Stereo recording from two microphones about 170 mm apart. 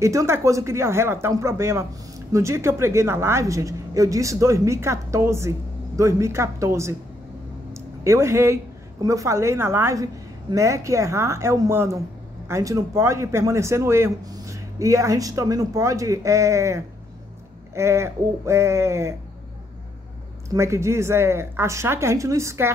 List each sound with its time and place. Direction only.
0.0 s speech: 15° right (ahead or behind)
7.7 s a sound: 15° right (ahead or behind)
9.0 s speech: 20° right (ahead or behind)
20.4 s speech: 15° right (ahead or behind)